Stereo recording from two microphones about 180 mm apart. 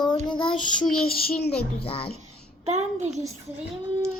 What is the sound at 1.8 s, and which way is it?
Speech, 35° left (ahead or behind).